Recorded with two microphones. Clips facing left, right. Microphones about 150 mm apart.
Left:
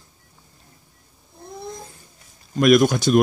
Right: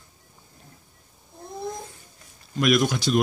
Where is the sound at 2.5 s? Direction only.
50° left (ahead or behind).